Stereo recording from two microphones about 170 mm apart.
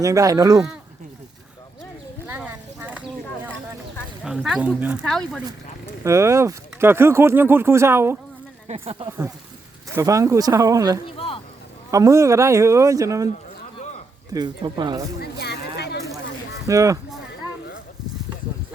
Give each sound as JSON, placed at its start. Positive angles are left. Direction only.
{"t": 0.0, "sound": "speech", "side_deg": -20}
{"t": 2.2, "sound": "a sound", "side_deg": -10}
{"t": 4.2, "sound": "speech", "side_deg": -5}
{"t": 5.0, "sound": "speech", "side_deg": 5}
{"t": 6.0, "sound": "speech", "side_deg": -15}
{"t": 8.6, "sound": "speech", "side_deg": -35}
{"t": 9.9, "sound": "speech", "side_deg": -20}
{"t": 11.0, "sound": "a sound", "side_deg": 30}
{"t": 11.9, "sound": "speech", "side_deg": -20}
{"t": 14.3, "sound": "speech", "side_deg": -25}
{"t": 15.2, "sound": "a sound", "side_deg": 75}
{"t": 16.6, "sound": "speech", "side_deg": -20}